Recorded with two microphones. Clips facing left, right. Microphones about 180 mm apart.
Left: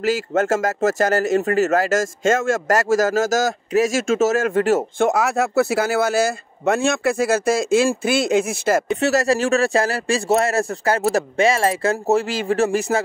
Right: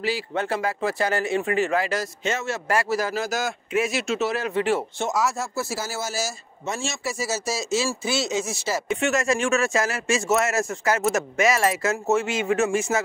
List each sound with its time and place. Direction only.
0.0 s speech: 45° left (ahead or behind)
9.0 s speech: 35° left (ahead or behind)